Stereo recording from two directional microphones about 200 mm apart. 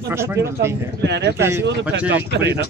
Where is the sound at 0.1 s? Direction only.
15° right (ahead or behind).